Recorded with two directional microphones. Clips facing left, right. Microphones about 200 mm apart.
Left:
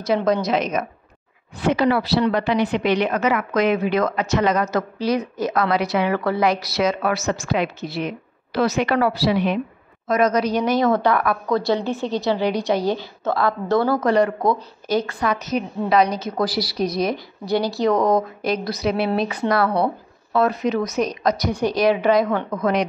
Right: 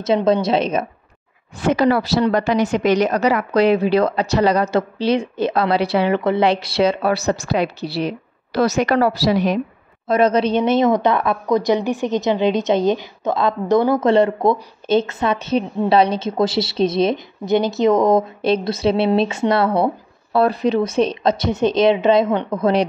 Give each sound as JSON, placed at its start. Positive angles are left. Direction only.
{"t": 0.0, "sound": "a woman's voice", "side_deg": -25}
{"t": 1.6, "sound": "a woman's voice", "side_deg": -45}
{"t": 10.0, "sound": "a woman's voice", "side_deg": -30}